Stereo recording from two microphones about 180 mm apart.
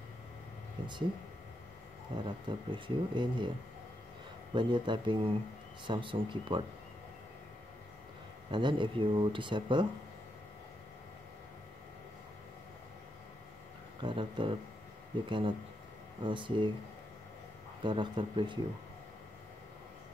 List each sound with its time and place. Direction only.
2.1 s speech: 25° right (ahead or behind)
4.6 s speech: 25° right (ahead or behind)
8.5 s speech: 25° right (ahead or behind)
14.0 s speech: 30° right (ahead or behind)
17.8 s speech: 25° right (ahead or behind)